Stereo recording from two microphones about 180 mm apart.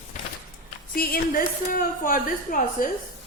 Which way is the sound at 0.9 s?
55° left (ahead or behind).